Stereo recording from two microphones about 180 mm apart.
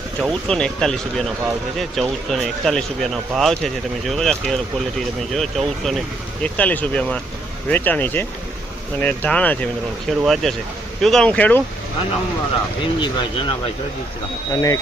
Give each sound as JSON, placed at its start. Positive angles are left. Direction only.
{"t": 0.2, "sound": "speech", "side_deg": 5}
{"t": 12.8, "sound": "speech", "side_deg": 25}
{"t": 14.5, "sound": "speech", "side_deg": 20}